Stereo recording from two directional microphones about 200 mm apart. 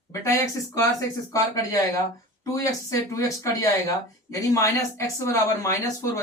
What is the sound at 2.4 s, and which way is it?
Speech, 15° left (ahead or behind).